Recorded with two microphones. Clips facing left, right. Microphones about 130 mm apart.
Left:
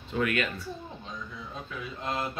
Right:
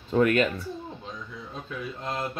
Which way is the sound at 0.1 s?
40° right (ahead or behind).